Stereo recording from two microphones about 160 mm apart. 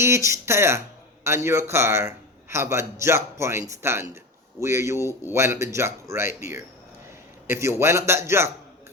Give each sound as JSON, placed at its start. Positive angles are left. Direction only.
{"t": 0.3, "sound": "a man's voice", "side_deg": -15}